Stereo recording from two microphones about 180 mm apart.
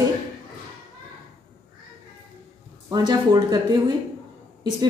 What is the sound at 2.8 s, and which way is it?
Speech, 20° right (ahead or behind).